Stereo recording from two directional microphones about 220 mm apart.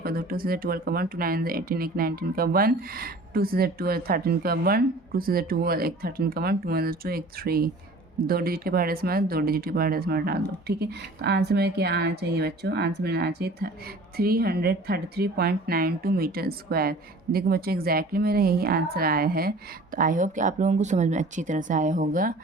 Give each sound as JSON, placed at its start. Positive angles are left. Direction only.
{"t": 0.0, "sound": "a woman's voice", "side_deg": -40}